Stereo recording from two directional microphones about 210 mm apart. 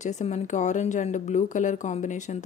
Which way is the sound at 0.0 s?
35° left (ahead or behind).